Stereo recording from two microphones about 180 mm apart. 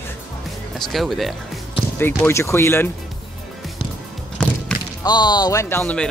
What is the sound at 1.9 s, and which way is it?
Speech, 10° left (ahead or behind).